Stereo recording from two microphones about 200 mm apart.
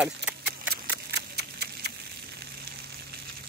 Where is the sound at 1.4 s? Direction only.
55° right (ahead or behind).